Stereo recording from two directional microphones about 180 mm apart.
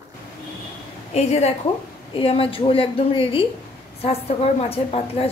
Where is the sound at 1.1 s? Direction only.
35° left (ahead or behind).